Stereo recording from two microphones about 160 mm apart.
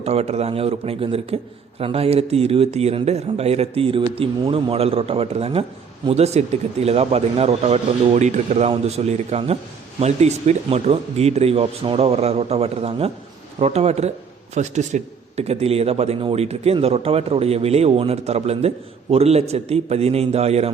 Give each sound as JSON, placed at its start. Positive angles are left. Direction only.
{"t": 0.0, "sound": "a man's voice", "side_deg": -40}